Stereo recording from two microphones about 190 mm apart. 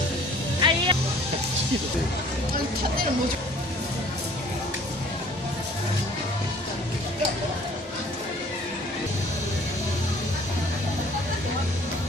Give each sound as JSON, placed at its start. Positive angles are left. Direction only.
{"t": 0.6, "sound": "music", "side_deg": -25}